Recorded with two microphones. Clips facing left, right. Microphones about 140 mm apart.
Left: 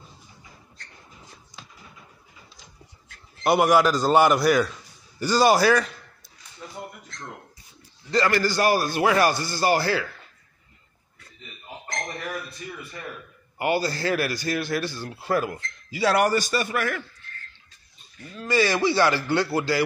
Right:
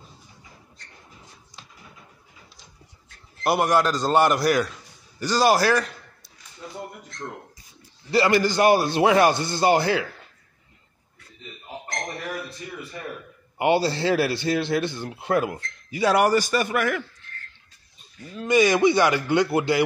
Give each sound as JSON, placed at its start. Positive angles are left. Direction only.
{"t": 3.4, "sound": "a man's voice", "side_deg": 0}
{"t": 8.1, "sound": "speech", "side_deg": -15}
{"t": 13.6, "sound": "speech", "side_deg": -25}
{"t": 18.4, "sound": "speech", "side_deg": -20}